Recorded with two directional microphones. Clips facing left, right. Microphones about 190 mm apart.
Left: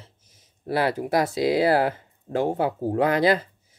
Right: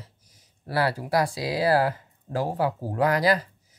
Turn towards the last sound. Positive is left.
turn(degrees=25)  # may be behind; listen again after turning